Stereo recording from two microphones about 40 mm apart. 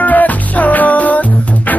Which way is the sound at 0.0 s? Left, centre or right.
Left.